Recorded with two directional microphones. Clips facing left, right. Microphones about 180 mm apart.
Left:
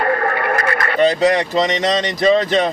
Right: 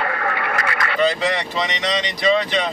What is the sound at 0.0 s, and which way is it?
Speech, 45° left (ahead or behind).